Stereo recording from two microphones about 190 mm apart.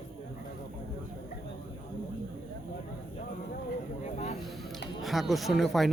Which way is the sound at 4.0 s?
35° left (ahead or behind).